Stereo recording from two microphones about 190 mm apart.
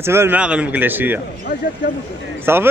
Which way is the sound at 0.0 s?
15° right (ahead or behind).